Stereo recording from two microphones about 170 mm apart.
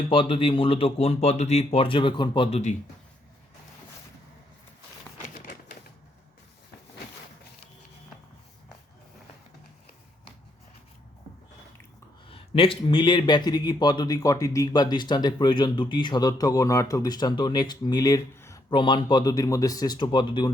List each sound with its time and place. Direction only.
0.1 s speech: 30° left (ahead or behind)
12.3 s a man's voice: 35° left (ahead or behind); by 18.6 s 15° left (ahead or behind)
18.7 s a man's voice: 30° left (ahead or behind)